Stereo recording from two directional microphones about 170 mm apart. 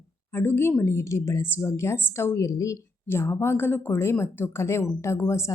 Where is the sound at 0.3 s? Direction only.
15° left (ahead or behind).